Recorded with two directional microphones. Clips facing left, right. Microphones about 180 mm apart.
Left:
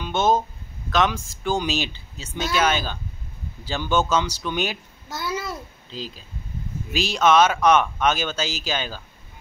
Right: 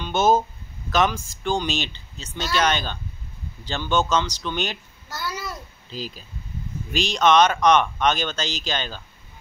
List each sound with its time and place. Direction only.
0.0 s speech: 5° right (ahead or behind)
5.1 s babbling: 20° left (ahead or behind)
5.9 s speech: 5° right (ahead or behind)